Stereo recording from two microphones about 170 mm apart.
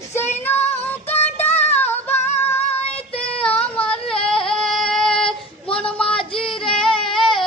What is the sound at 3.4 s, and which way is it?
Yodeling, 5° left (ahead or behind).